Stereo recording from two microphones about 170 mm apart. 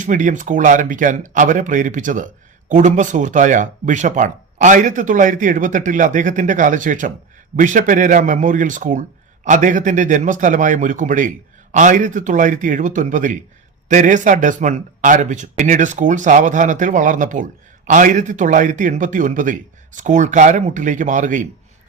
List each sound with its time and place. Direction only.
0.0 s speech: 50° right (ahead or behind)